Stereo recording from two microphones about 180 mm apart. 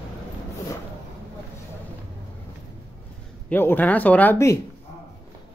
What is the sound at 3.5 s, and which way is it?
Speech, 10° left (ahead or behind).